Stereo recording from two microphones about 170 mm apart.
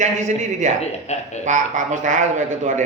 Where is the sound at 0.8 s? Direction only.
40° left (ahead or behind).